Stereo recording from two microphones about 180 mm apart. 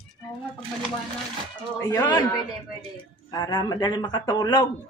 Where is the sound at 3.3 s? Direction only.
20° left (ahead or behind).